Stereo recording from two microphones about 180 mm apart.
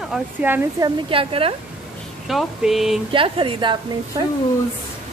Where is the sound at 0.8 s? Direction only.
30° right (ahead or behind).